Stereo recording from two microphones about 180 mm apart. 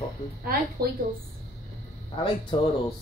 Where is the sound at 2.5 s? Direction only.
25° left (ahead or behind).